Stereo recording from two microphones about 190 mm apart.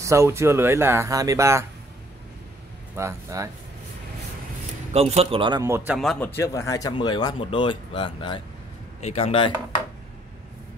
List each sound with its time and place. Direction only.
0.0 s speech: 15° right (ahead or behind)
3.0 s speech: 15° right (ahead or behind)
4.9 s speech: 35° right (ahead or behind); by 5.9 s 15° right (ahead or behind)
5.9 s speech: 5° left (ahead or behind); by 9.5 s 30° left (ahead or behind)